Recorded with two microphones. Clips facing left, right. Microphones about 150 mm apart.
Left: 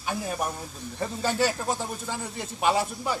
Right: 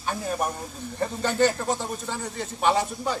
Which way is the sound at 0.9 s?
10° left (ahead or behind).